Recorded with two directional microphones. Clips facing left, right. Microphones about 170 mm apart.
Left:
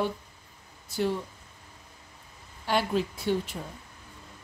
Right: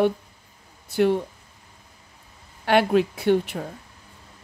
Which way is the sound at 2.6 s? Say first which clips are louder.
Right 8 dB; 65° right (ahead or behind).